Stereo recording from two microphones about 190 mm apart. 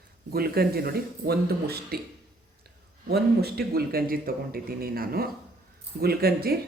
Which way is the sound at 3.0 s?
55° right (ahead or behind).